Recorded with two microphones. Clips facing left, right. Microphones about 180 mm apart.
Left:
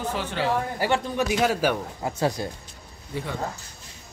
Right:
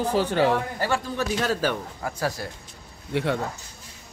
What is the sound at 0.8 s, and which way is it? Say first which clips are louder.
A man's voice: left 2 dB; 15° left (ahead or behind).